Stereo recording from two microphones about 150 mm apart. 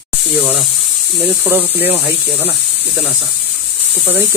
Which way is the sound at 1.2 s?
10° right (ahead or behind).